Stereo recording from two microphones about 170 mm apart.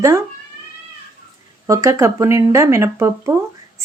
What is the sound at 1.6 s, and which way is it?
Speech, 20° right (ahead or behind).